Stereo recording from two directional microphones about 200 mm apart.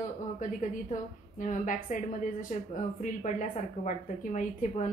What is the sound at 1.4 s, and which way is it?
Speech, 40° left (ahead or behind).